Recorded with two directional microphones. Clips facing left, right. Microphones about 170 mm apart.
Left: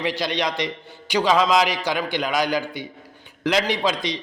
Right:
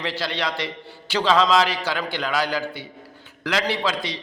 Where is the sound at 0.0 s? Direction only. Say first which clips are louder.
Left 3 dB; 15° left (ahead or behind).